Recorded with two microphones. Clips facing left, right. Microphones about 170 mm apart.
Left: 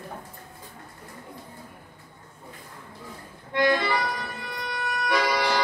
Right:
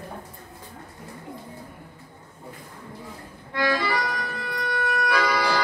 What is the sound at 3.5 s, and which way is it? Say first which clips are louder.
Music: left 2 dB; 25° left (ahead or behind).